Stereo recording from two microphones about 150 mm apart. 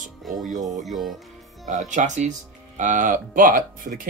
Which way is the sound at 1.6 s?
55° right (ahead or behind).